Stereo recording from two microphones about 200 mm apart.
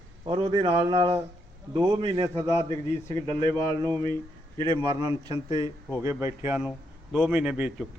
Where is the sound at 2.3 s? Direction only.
15° left (ahead or behind).